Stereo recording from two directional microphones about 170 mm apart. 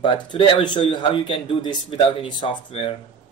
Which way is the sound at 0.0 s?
25° left (ahead or behind).